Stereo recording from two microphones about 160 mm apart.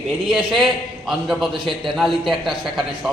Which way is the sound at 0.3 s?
Centre (ahead or behind).